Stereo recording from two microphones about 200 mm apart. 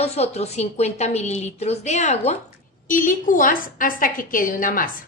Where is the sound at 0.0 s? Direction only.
30° left (ahead or behind).